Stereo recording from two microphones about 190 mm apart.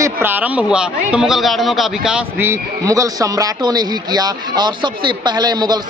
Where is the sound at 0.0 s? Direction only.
10° right (ahead or behind).